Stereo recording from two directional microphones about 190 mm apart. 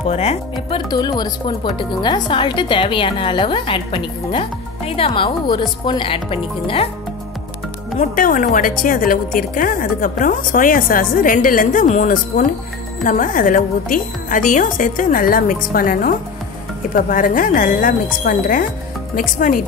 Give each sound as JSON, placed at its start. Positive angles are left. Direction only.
{"t": 0.0, "sound": "speech", "side_deg": 35}
{"t": 8.0, "sound": "a woman's voice", "side_deg": 45}